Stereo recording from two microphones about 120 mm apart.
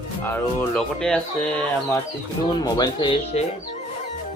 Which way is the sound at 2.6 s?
35° left (ahead or behind).